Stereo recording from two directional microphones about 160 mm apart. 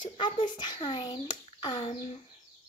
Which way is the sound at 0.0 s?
30° left (ahead or behind).